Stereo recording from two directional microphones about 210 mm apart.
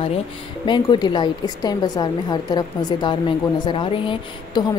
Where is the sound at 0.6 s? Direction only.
20° left (ahead or behind).